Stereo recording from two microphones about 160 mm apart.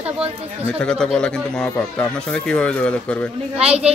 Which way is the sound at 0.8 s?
5° left (ahead or behind).